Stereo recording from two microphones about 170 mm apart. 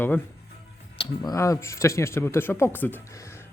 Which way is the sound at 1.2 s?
20° left (ahead or behind).